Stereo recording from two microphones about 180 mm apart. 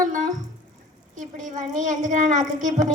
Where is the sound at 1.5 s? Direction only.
45° right (ahead or behind).